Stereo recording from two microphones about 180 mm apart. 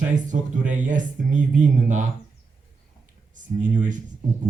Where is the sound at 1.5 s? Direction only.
45° right (ahead or behind).